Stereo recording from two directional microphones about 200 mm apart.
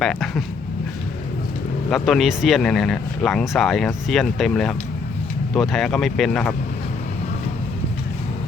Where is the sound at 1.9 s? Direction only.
Centre (ahead or behind).